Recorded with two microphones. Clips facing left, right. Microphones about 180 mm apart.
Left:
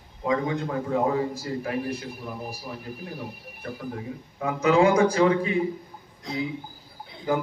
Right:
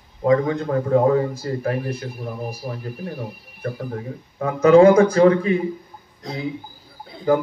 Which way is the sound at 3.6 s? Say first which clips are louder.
Right 5 dB; 45° right (ahead or behind).